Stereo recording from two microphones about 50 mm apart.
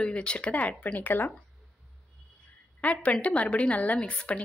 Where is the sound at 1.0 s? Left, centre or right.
Left.